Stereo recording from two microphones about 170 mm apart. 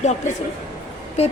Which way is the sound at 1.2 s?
40° left (ahead or behind).